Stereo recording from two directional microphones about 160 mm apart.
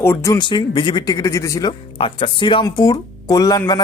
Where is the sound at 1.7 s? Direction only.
35° left (ahead or behind).